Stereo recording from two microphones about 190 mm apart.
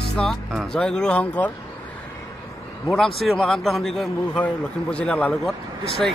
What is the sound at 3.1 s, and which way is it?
A man's voice, centre (ahead or behind).